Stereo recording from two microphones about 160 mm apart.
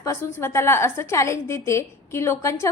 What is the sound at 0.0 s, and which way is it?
A woman's voice, 15° left (ahead or behind).